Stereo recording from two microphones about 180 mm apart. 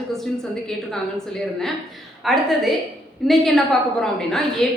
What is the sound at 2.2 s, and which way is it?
A woman's voice, centre (ahead or behind).